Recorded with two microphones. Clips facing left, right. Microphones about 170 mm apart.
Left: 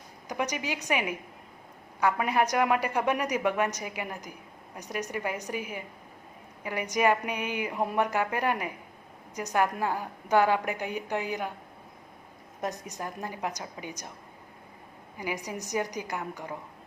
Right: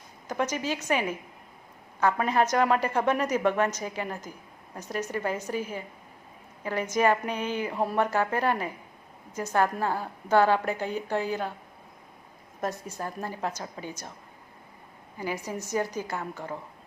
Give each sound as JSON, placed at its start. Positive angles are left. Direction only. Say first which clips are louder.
{"t": 0.3, "sound": "a woman's voice", "louder": "right 3 dB", "side_deg": 15}
{"t": 12.6, "sound": "a woman's voice", "louder": "right 2 dB", "side_deg": 15}
{"t": 15.2, "sound": "a woman's voice", "louder": "right 2 dB", "side_deg": 15}